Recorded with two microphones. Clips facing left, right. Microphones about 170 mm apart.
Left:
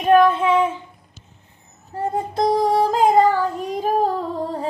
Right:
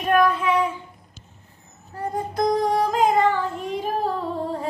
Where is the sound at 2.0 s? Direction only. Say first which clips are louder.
Left 3 dB; 30° left (ahead or behind).